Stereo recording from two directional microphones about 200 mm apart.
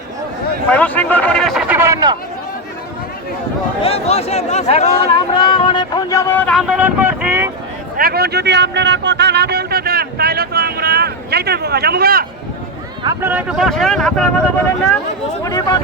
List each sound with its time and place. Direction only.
0.7 s speech: 10° left (ahead or behind); by 2.1 s 15° right (ahead or behind)
3.8 s speech: 30° left (ahead or behind); by 7.5 s 10° right (ahead or behind)
7.9 s a sound: 50° right (ahead or behind)
13.2 s speech: 5° right (ahead or behind)
15.4 s speech: 15° left (ahead or behind)